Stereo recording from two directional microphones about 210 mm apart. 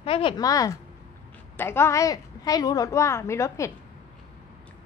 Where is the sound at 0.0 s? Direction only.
25° left (ahead or behind).